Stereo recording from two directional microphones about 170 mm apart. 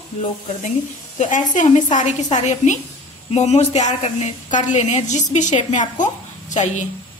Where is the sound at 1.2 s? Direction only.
45° left (ahead or behind).